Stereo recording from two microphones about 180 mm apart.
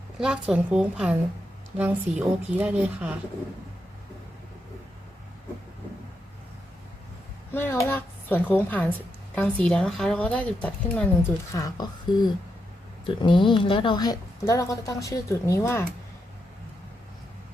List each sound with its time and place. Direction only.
0.2 s a woman's voice: 5° right (ahead or behind)
7.5 s speech: 10° left (ahead or behind)
11.5 s a woman's voice: 20° left (ahead or behind)